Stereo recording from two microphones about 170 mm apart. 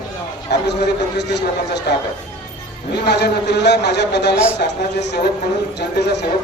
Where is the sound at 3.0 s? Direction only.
80° left.